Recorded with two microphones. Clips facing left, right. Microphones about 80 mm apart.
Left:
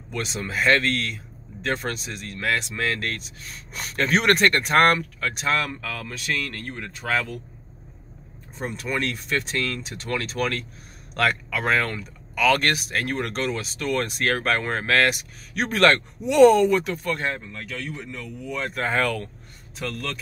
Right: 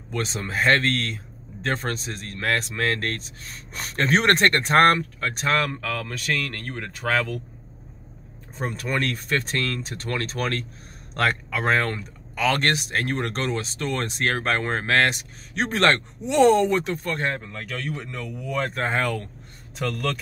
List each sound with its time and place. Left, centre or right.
0.1 s a man's voice: right
8.5 s a man's voice: right
17.5 s speech: right
18.7 s speech: right
19.8 s speech: right